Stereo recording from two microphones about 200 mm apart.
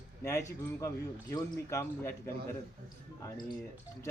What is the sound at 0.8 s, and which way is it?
A man's voice, 15° left (ahead or behind).